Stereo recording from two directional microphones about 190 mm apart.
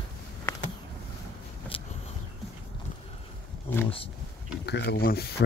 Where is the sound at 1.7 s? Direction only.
30° left (ahead or behind).